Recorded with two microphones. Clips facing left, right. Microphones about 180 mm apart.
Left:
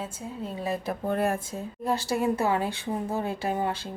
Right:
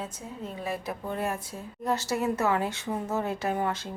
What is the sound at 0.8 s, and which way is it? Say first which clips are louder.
Speech: left 5 dB; 50° left (ahead or behind).